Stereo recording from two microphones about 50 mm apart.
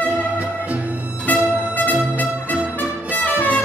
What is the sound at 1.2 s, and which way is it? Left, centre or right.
Music, left.